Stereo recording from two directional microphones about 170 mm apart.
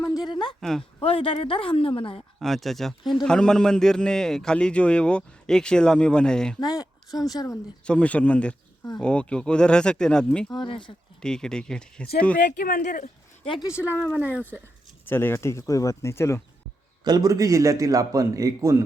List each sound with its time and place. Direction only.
0.0 s a sound: 20° left (ahead or behind)
0.6 s a man's voice: 5° left (ahead or behind)
1.0 s speech: 35° left (ahead or behind)
2.4 s a man's voice: centre (ahead or behind)
6.6 s speech: 20° left (ahead or behind)
7.9 s a man's voice: 5° left (ahead or behind)
10.5 s speech: 25° left (ahead or behind)
11.2 s a man's voice: 5° left (ahead or behind)
12.5 s speech: 55° left (ahead or behind)
13.4 s speech: 30° left (ahead or behind)
13.9 s speech: 10° left (ahead or behind)
14.2 s speech: 10° right (ahead or behind)
15.0 s speech: 15° left (ahead or behind)
17.0 s a man's voice: 25° right (ahead or behind)